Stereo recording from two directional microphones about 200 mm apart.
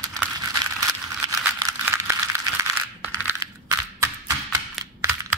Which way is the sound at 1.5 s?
15° right (ahead or behind).